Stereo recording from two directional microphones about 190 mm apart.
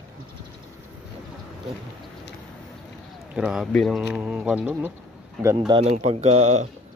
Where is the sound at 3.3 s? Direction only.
5° right (ahead or behind).